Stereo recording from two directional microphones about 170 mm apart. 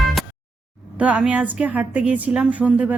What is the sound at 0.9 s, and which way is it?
Speech, 10° right (ahead or behind).